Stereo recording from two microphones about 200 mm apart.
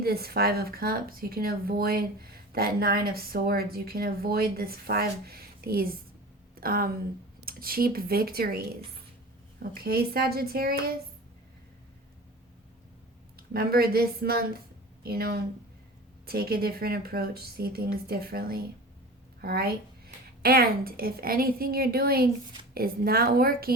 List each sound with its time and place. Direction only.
0.0 s speech: 50° right (ahead or behind)
9.7 s speech: 50° right (ahead or behind)
13.3 s a woman's voice: 50° right (ahead or behind)